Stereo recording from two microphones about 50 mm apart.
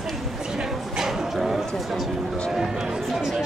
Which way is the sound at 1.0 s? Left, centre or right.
Centre.